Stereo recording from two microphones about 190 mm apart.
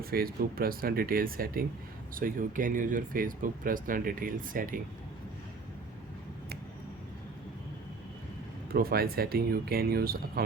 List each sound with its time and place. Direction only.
0.0 s speech: 50° right (ahead or behind)
8.7 s speech: 55° right (ahead or behind)